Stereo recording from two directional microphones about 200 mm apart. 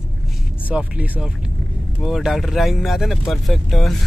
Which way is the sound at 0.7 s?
5° right (ahead or behind).